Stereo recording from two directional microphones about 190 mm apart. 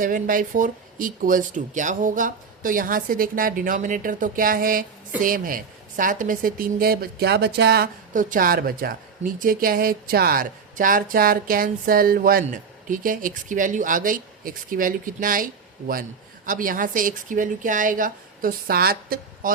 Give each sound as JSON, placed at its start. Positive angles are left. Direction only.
{"t": 0.0, "sound": "speech", "side_deg": -45}
{"t": 16.5, "sound": "speech", "side_deg": -45}